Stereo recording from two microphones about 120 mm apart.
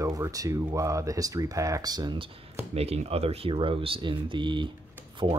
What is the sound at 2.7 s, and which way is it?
Speech, 60° right (ahead or behind).